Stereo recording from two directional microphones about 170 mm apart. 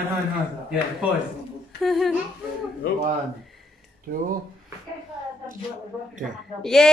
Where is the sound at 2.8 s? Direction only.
65° left (ahead or behind).